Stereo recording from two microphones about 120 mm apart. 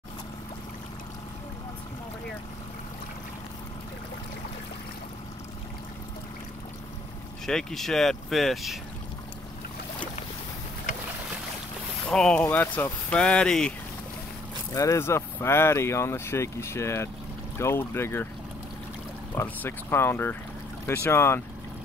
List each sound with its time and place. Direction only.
7.4 s speech: 5° left (ahead or behind)
12.1 s speech: 5° left (ahead or behind)
14.7 s speech: 25° left (ahead or behind)
19.3 s speech: 15° left (ahead or behind)